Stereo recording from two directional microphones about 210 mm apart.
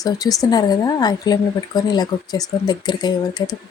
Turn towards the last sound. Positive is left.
turn(degrees=20)  # may be behind; listen again after turning